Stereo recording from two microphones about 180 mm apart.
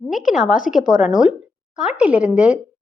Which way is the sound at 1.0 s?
5° right (ahead or behind).